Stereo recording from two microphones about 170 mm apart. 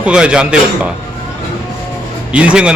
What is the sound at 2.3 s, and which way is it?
Speech, 5° right (ahead or behind).